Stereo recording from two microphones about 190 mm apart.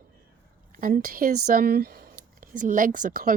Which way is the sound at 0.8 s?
50° right (ahead or behind).